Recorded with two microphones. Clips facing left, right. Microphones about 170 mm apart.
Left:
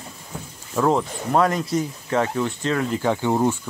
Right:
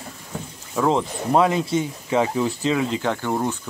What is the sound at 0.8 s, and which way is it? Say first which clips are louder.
Speech: even; 5° left (ahead or behind).